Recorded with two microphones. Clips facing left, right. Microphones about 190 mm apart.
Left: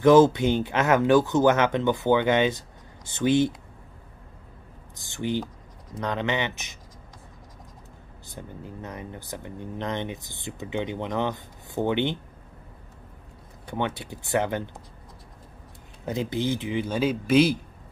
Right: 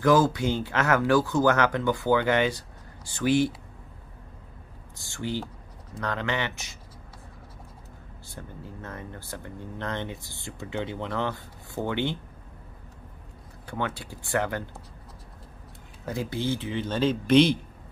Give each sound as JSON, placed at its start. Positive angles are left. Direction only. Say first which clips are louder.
{"t": 0.0, "sound": "speech", "louder": "left 5 dB", "side_deg": 25}
{"t": 4.9, "sound": "speech", "louder": "left 4 dB", "side_deg": 20}
{"t": 8.3, "sound": "speech", "louder": "left 3 dB", "side_deg": 15}
{"t": 13.7, "sound": "speech", "louder": "left 3 dB", "side_deg": 20}
{"t": 16.1, "sound": "speech", "louder": "left 2 dB", "side_deg": 20}